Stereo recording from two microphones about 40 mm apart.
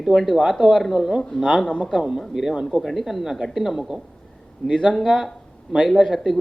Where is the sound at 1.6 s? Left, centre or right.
Left.